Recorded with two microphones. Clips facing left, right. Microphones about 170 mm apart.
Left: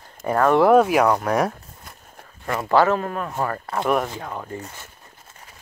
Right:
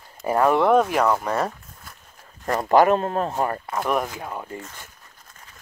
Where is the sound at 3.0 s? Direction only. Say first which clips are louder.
Right 2 dB; 30° right (ahead or behind).